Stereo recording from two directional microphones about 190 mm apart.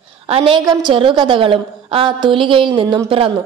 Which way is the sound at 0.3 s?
25° right (ahead or behind).